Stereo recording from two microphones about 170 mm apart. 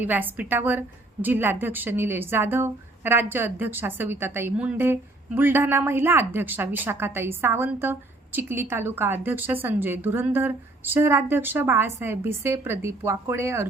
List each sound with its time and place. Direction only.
0.0 s a woman's voice: 10° right (ahead or behind)